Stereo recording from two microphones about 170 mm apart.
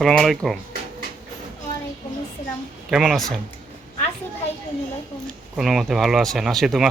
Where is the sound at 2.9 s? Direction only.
Centre (ahead or behind).